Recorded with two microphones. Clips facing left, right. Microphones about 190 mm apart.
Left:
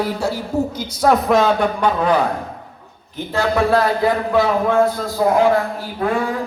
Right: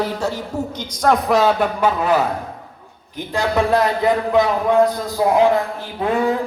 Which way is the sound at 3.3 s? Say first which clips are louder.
Left 1 dB; 20° right (ahead or behind).